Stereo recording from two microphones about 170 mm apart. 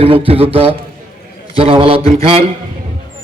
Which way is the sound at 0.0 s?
35° right (ahead or behind).